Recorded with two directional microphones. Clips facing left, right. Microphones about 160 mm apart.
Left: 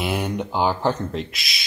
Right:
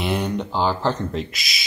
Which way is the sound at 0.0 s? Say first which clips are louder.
Right 1 dB; 5° left (ahead or behind).